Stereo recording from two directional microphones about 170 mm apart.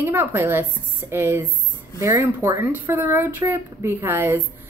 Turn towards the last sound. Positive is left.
turn(degrees=-15)  # may be behind; listen again after turning